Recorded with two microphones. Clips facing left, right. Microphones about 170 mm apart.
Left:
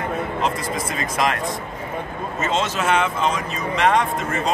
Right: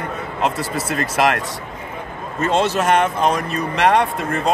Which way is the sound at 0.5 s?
70° right (ahead or behind).